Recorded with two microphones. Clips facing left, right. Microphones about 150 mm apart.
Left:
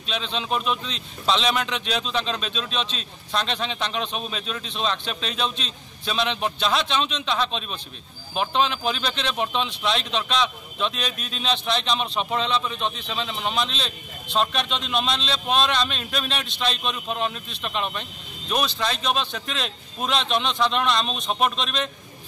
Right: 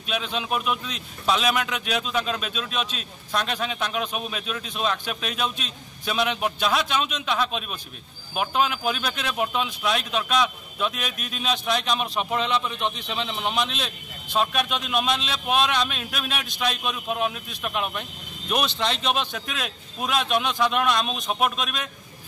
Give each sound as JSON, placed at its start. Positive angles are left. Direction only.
{"t": 0.0, "sound": "speech", "side_deg": -10}
{"t": 19.3, "sound": "speech", "side_deg": -5}